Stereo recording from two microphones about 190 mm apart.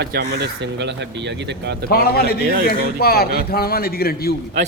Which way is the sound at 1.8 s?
55° left (ahead or behind).